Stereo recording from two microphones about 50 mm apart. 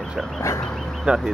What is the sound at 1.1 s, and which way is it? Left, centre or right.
Speech, centre.